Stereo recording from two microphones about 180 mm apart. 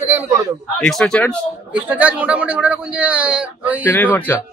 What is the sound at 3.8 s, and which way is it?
Speech, 10° left (ahead or behind).